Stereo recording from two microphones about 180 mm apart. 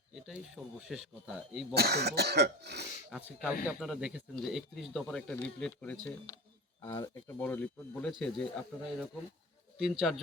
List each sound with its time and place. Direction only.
0.1 s speech: 5° right (ahead or behind)
1.7 s speech: 65° right (ahead or behind)
3.7 s speech: centre (ahead or behind)
6.1 s speech: 20° left (ahead or behind); by 10.2 s 5° right (ahead or behind)